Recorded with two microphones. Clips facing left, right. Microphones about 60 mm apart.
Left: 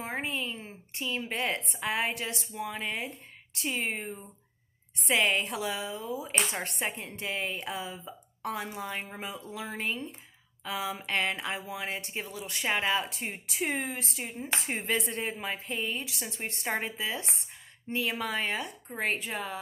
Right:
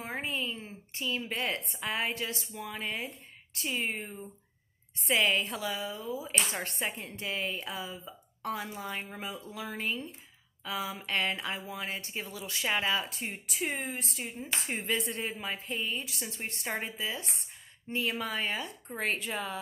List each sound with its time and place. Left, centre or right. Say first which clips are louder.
0.0 s a sound: left 1 dB; left
0.9 s speech: left 1 dB; left
18.9 s speech: left 1 dB; left